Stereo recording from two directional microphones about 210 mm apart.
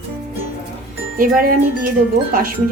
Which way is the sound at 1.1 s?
40° right (ahead or behind).